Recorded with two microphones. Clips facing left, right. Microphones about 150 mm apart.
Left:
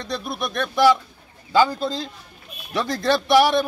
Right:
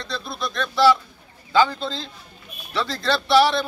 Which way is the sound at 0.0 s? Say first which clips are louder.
Left 2 dB; 15° left (ahead or behind).